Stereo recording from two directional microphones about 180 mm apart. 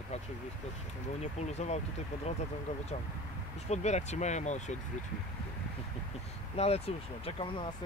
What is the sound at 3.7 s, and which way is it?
Speech, 40° left (ahead or behind).